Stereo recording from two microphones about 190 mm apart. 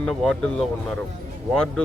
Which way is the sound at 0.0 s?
5° left (ahead or behind).